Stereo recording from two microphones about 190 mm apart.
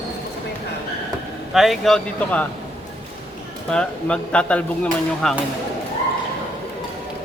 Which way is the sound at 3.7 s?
5° left (ahead or behind).